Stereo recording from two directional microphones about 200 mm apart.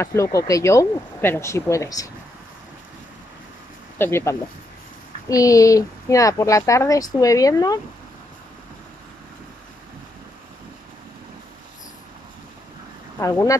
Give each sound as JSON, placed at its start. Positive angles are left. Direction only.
{"t": 0.0, "sound": "speech", "side_deg": 15}
{"t": 4.0, "sound": "speech", "side_deg": 15}
{"t": 13.2, "sound": "speech", "side_deg": 15}